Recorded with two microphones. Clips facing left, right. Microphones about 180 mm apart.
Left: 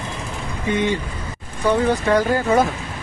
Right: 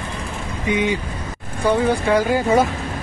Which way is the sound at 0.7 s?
10° right (ahead or behind).